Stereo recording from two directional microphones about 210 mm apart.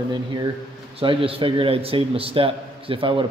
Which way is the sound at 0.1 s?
20° right (ahead or behind).